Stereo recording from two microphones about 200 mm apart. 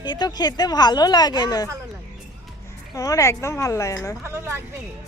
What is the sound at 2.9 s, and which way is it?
Speech, 15° left (ahead or behind).